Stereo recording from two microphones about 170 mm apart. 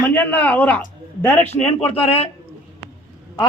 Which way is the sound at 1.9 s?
35° left (ahead or behind).